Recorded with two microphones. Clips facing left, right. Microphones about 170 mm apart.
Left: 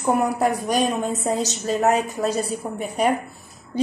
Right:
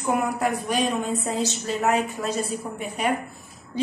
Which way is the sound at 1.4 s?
40° left (ahead or behind).